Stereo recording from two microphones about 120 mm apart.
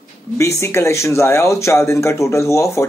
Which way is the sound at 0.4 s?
25° left (ahead or behind).